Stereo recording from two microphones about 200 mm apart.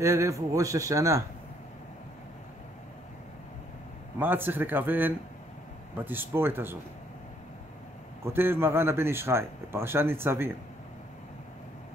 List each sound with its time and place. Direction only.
0.0 s a man's voice: 15° right (ahead or behind)
4.2 s a man's voice: 10° right (ahead or behind)
8.2 s a man's voice: 10° right (ahead or behind)